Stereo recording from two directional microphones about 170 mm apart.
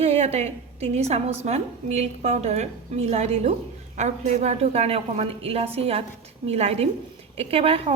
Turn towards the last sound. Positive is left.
turn(degrees=-35)  # may be behind; listen again after turning